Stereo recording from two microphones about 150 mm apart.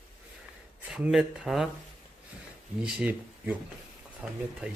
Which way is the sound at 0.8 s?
5° right (ahead or behind).